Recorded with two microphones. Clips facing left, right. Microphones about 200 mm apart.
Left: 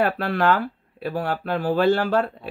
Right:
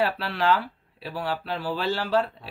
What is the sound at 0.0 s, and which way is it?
Speech, 50° left (ahead or behind).